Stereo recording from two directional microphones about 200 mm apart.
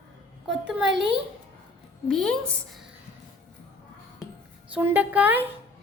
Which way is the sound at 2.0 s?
Centre (ahead or behind).